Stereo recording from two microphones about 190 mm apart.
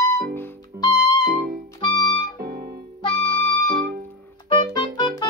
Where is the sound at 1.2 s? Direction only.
45° right (ahead or behind).